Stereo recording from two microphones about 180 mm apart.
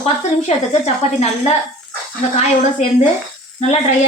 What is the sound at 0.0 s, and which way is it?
Speech, 35° left (ahead or behind).